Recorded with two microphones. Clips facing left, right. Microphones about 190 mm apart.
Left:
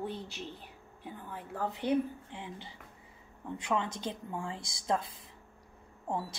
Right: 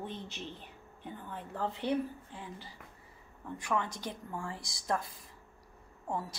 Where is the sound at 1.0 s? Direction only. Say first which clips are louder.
Even; 10° left (ahead or behind).